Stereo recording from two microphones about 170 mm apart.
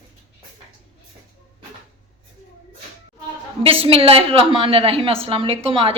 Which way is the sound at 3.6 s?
35° right (ahead or behind).